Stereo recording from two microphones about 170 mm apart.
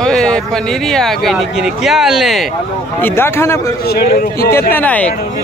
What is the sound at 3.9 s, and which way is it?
Speech, 65° left (ahead or behind).